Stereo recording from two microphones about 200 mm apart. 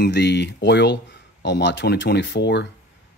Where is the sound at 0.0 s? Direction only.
55° left (ahead or behind).